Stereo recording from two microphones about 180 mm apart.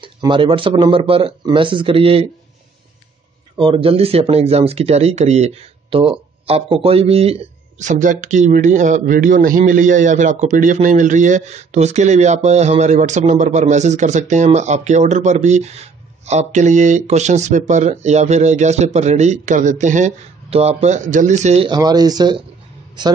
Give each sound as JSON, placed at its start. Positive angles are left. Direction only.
{"t": 0.0, "sound": "speech", "side_deg": -25}
{"t": 3.5, "sound": "speech", "side_deg": -30}
{"t": 21.6, "sound": "speech", "side_deg": -20}